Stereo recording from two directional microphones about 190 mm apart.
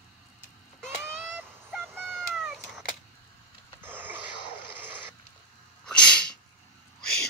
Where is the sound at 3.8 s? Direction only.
10° right (ahead or behind).